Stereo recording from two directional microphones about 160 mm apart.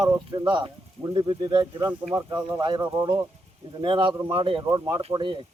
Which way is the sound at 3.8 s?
30° right (ahead or behind).